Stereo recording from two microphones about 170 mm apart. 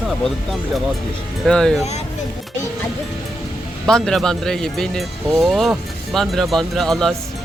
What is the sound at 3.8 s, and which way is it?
Speech, 5° left (ahead or behind).